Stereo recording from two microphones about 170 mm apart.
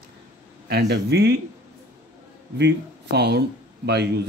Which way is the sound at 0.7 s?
80° right.